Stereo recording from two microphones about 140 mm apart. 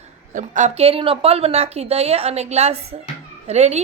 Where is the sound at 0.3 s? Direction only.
60° right (ahead or behind).